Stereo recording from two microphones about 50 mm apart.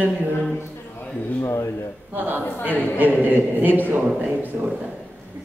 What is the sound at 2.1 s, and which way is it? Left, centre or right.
A woman's voice, right.